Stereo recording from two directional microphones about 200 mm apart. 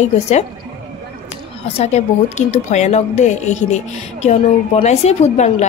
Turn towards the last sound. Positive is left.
turn(degrees=35)  # may be behind; listen again after turning